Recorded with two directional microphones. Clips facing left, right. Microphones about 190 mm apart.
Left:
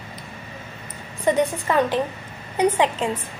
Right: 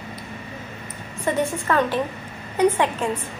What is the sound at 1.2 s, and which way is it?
A woman's voice, 15° left (ahead or behind).